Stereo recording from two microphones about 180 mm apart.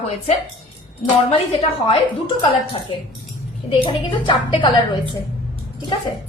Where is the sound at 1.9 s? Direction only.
30° left (ahead or behind).